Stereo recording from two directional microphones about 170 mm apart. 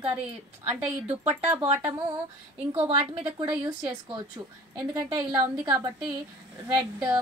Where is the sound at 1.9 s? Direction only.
30° right (ahead or behind).